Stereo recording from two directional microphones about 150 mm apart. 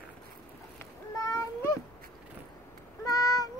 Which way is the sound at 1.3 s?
20° left (ahead or behind).